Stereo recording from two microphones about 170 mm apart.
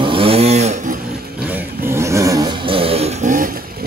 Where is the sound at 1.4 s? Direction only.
10° right (ahead or behind).